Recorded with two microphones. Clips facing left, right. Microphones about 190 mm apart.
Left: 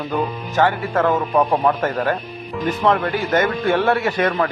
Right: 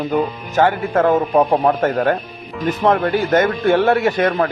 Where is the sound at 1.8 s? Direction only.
50° right (ahead or behind).